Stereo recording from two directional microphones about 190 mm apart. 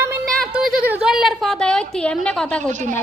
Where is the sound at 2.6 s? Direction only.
40° right (ahead or behind).